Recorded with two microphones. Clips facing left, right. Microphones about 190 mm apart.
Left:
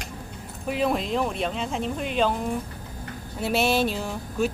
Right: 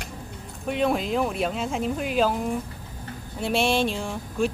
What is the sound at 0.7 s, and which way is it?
Speech, centre (ahead or behind).